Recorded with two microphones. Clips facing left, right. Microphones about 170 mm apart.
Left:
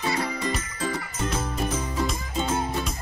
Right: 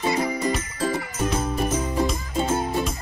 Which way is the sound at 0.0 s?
20° right (ahead or behind).